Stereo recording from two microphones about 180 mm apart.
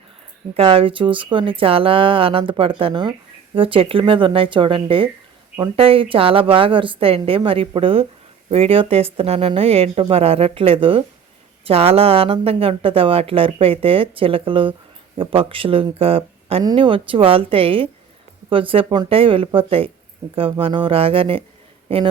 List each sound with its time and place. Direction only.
0.5 s a man's voice: 30° right (ahead or behind)